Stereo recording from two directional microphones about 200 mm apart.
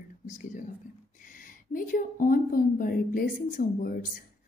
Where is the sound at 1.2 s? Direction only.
40° left (ahead or behind).